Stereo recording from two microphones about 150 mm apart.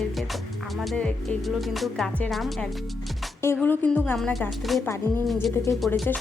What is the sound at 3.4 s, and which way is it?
Speech, 15° left (ahead or behind).